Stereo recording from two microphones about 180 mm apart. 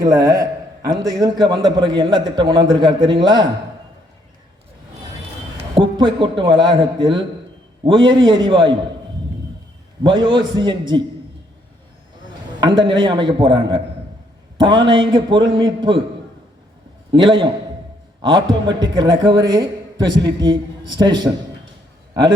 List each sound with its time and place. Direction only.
0.0 s a man's voice: 20° right (ahead or behind)
5.7 s a man's voice: 25° right (ahead or behind)
10.0 s a man's voice: 25° right (ahead or behind)
12.5 s a man's voice: 25° right (ahead or behind)
17.1 s a man's voice: 25° right (ahead or behind)